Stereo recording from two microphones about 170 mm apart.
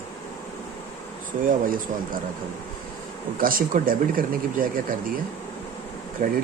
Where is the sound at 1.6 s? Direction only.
55° right (ahead or behind).